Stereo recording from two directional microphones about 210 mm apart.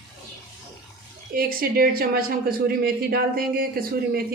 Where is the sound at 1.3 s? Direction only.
45° right (ahead or behind).